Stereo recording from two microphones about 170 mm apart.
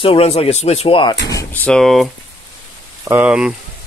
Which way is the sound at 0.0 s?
35° left (ahead or behind).